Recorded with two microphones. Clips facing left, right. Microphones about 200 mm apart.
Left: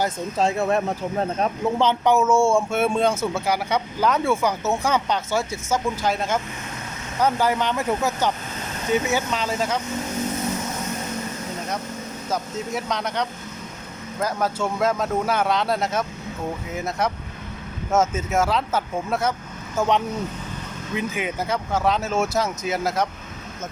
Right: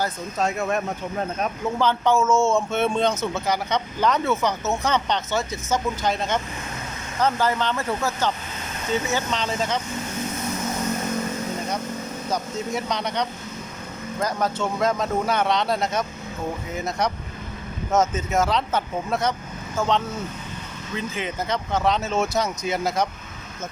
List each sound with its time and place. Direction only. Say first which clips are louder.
0.0 s speech: left 3 dB; 30° left (ahead or behind)
1.8 s speech: left 1 dB; 20° left (ahead or behind)
12.3 s speech: even; centre (ahead or behind)
19.7 s speech: left 2 dB; 15° left (ahead or behind)